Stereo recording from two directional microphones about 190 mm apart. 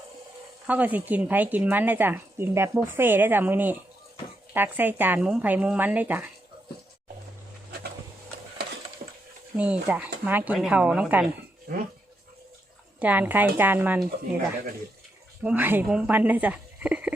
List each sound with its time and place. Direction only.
0.7 s speech: 10° right (ahead or behind)
9.0 s a sound: 45° right (ahead or behind)
9.6 s speech: 5° right (ahead or behind)
13.0 s speech: 10° right (ahead or behind)
15.4 s speech: 10° right (ahead or behind)